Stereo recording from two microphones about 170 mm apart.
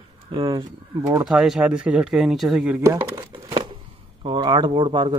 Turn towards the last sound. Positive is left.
turn(degrees=-30)  # may be behind; listen again after turning